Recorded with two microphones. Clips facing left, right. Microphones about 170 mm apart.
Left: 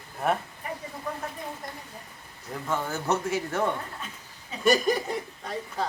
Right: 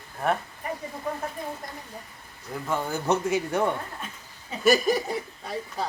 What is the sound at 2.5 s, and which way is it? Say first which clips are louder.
Speech: right 1 dB; 10° right (ahead or behind).